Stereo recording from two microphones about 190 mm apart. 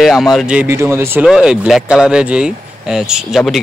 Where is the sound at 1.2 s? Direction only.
5° right (ahead or behind).